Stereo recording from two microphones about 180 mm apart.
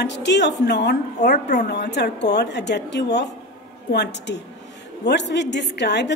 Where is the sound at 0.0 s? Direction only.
75° left (ahead or behind).